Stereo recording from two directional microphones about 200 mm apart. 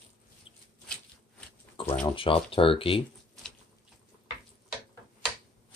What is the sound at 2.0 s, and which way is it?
Speech, 25° left (ahead or behind).